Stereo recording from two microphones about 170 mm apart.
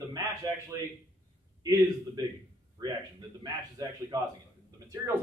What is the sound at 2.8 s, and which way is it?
A man's voice, 25° right (ahead or behind).